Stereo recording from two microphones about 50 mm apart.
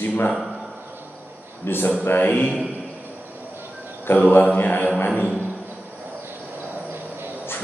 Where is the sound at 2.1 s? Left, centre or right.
Left.